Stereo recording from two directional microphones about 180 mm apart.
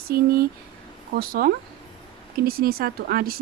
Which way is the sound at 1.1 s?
55° right (ahead or behind).